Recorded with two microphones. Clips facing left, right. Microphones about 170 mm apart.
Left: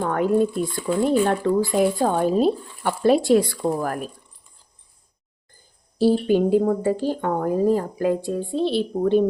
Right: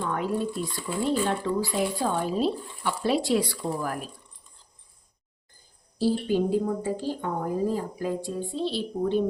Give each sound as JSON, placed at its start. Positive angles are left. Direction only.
{"t": 0.0, "sound": "speech", "side_deg": 55}
{"t": 6.0, "sound": "speech", "side_deg": 65}